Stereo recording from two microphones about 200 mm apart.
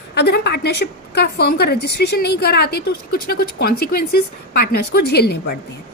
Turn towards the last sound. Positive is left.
turn(degrees=55)  # may be behind; listen again after turning